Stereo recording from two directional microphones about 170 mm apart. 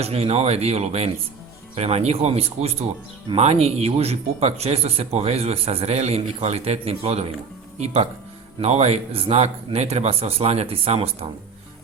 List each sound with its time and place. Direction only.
0.0 s speech: 35° right (ahead or behind)
8.6 s speech: 40° right (ahead or behind)